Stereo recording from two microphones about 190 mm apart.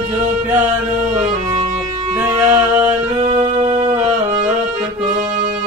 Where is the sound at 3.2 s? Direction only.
35° right (ahead or behind).